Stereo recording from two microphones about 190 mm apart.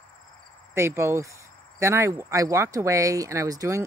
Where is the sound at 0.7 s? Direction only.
15° right (ahead or behind).